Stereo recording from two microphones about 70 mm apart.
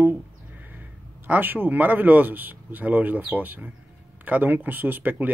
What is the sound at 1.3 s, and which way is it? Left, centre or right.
Speech, right.